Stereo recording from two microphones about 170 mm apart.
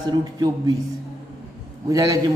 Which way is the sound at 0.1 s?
25° right (ahead or behind).